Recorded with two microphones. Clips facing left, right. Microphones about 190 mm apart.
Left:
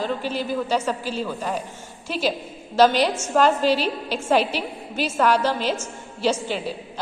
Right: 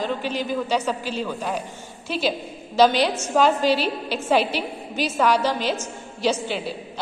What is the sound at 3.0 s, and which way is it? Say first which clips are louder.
A woman's voice: even; 10° right (ahead or behind).